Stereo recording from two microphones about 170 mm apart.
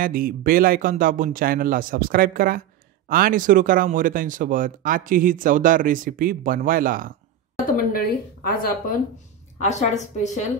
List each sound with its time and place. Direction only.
0.0 s speech: 55° right (ahead or behind)
7.5 s a sound: 55° left (ahead or behind)
8.5 s speech: 55° left (ahead or behind)
9.6 s a woman's voice: 40° left (ahead or behind)